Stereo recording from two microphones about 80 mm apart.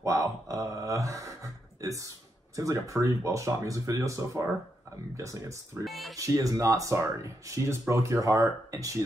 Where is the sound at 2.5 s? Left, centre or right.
Right.